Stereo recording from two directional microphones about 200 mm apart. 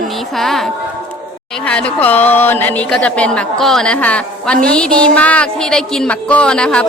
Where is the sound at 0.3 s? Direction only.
Centre (ahead or behind).